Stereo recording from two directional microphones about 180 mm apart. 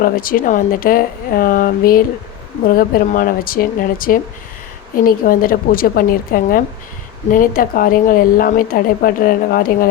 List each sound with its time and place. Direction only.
0.0 s a woman's voice: 50° left (ahead or behind)